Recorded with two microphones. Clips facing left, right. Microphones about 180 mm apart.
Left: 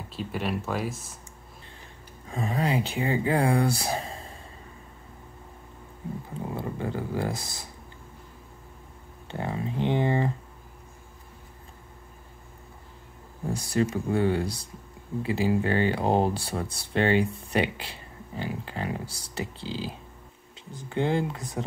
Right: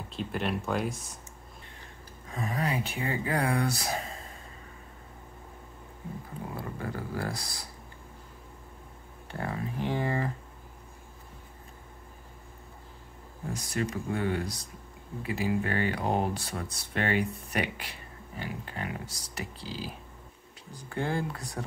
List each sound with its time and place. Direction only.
0.1 s speech: centre (ahead or behind)
2.3 s speech: 30° left (ahead or behind)
6.5 s a sound: 25° left (ahead or behind)
9.3 s speech: 20° left (ahead or behind)
13.5 s speech: 30° left (ahead or behind)